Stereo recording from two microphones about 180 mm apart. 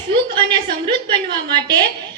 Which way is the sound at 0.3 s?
25° right (ahead or behind).